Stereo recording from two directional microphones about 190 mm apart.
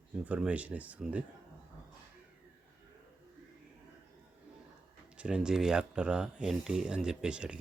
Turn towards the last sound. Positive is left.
turn(degrees=-5)  # may be behind; listen again after turning